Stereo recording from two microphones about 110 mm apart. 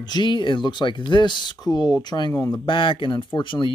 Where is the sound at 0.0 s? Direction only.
45° left (ahead or behind).